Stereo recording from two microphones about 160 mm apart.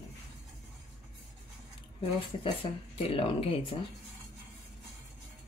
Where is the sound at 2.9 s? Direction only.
35° left (ahead or behind).